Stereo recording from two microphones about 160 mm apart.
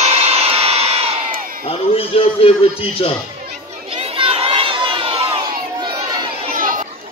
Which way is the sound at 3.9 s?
35° right (ahead or behind).